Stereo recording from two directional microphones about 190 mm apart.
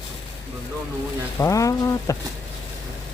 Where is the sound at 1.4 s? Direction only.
15° left (ahead or behind).